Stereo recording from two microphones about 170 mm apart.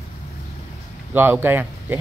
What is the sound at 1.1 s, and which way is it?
Speech, 10° right (ahead or behind).